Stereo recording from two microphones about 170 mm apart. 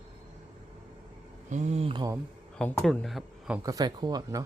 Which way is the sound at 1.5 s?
45° right (ahead or behind).